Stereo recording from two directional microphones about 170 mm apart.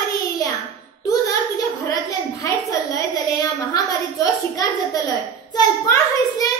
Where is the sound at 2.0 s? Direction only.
20° left (ahead or behind).